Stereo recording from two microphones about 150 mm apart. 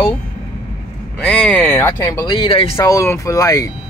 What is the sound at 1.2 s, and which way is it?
Speech, 5° left (ahead or behind).